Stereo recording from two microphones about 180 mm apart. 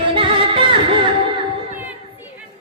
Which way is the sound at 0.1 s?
30° right (ahead or behind).